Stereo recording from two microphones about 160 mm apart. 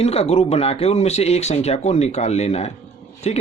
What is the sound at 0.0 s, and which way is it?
Speech, 40° left (ahead or behind).